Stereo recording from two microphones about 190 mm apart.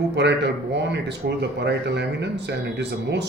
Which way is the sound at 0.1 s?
65° right (ahead or behind).